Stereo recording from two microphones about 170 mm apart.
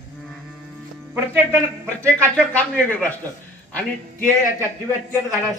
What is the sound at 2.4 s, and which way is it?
Speech, 5° left (ahead or behind).